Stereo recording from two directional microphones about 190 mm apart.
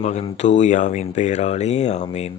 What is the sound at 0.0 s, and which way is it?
Speech, 35° left (ahead or behind).